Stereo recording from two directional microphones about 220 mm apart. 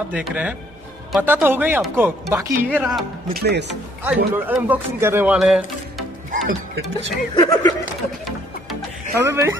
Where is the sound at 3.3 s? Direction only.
50° right (ahead or behind).